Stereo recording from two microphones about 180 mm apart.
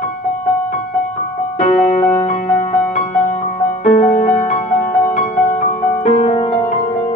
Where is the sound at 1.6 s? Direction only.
40° left (ahead or behind).